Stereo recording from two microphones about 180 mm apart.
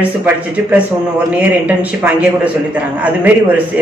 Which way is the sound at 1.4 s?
10° right (ahead or behind).